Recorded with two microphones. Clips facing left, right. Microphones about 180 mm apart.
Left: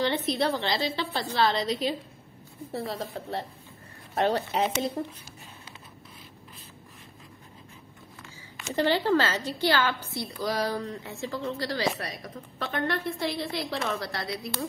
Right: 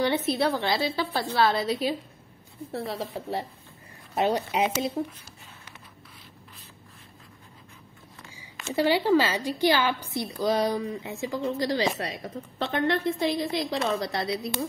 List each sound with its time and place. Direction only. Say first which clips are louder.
0.0 s a woman's voice: right 2 dB; 10° right (ahead or behind)
8.7 s speech: right 2 dB; 10° right (ahead or behind)